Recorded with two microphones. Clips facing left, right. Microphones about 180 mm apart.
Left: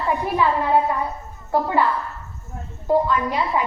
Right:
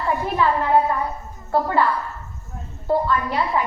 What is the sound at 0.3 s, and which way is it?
A woman's voice, 15° left (ahead or behind).